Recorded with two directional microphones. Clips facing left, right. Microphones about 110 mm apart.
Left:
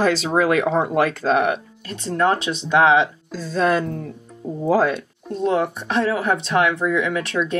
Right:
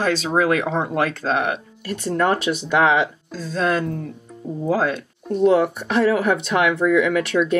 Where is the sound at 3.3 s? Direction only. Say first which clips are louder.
Left 2 dB; 5° left (ahead or behind).